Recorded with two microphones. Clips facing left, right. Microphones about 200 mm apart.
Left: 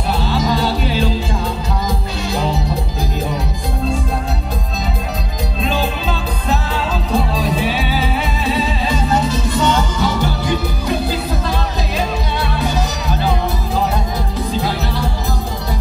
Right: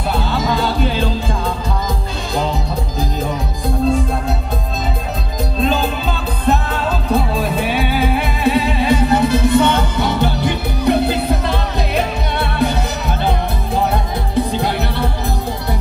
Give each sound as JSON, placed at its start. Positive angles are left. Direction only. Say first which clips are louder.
{"t": 7.3, "sound": "music", "louder": "even", "side_deg": -55}
{"t": 14.5, "sound": "music", "louder": "right 1 dB", "side_deg": -60}